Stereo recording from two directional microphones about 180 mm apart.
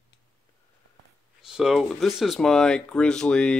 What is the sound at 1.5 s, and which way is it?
Speech, 5° right (ahead or behind).